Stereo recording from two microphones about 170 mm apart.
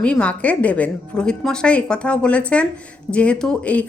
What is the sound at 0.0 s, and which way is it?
A woman's voice, 5° left (ahead or behind).